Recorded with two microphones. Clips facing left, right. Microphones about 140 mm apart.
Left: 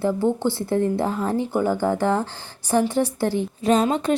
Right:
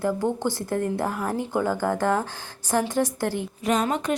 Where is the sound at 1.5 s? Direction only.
10° left (ahead or behind).